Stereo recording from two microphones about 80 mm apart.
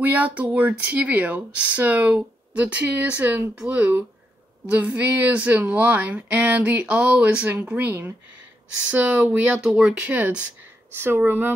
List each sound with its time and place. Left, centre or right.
0.0 s speech: centre